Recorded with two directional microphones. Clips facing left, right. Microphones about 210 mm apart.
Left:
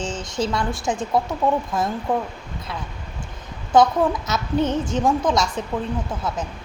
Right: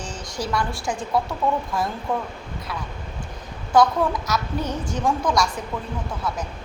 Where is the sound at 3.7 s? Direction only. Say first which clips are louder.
Left 2 dB; 20° left (ahead or behind).